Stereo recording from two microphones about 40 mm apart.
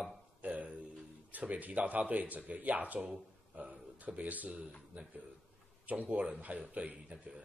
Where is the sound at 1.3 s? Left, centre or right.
Right.